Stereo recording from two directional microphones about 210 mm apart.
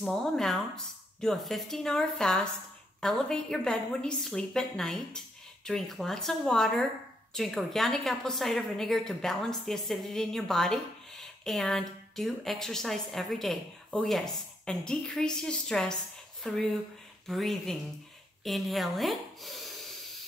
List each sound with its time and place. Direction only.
0.0 s a woman's voice: centre (ahead or behind)